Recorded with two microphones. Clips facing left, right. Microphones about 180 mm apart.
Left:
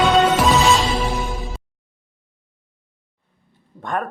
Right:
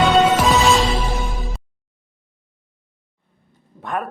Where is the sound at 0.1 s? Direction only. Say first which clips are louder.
Right 1 dB; centre (ahead or behind).